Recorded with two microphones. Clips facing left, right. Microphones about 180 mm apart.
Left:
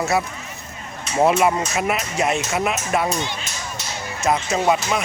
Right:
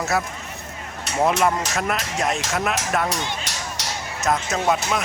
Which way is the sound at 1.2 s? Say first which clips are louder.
Left 3 dB; 10° left (ahead or behind).